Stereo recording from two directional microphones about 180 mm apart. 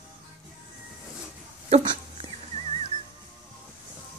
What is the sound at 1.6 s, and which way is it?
Dog, 30° right (ahead or behind).